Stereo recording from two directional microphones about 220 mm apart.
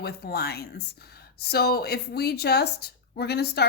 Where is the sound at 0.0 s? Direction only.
45° left (ahead or behind).